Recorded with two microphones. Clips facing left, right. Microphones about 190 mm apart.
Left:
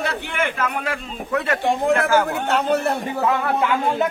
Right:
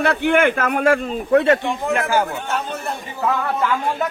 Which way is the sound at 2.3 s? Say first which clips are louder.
Left 6 dB; 65° left (ahead or behind).